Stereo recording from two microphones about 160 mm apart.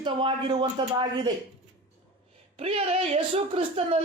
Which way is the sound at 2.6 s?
40° right (ahead or behind).